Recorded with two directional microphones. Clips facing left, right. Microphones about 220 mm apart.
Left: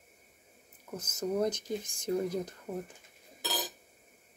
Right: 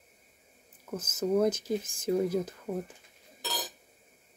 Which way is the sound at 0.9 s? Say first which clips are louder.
Right 5 dB; 5° right (ahead or behind).